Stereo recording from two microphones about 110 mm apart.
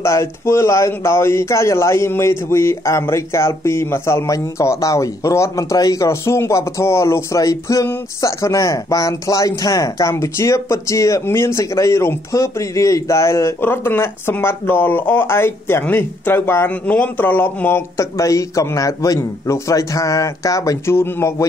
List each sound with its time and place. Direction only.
0.0 s speech: 25° left (ahead or behind)
18.1 s speech: 30° left (ahead or behind)